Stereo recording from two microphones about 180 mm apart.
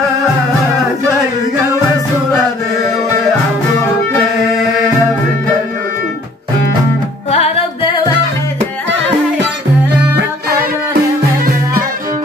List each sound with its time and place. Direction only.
7.2 s music: 35° left (ahead or behind)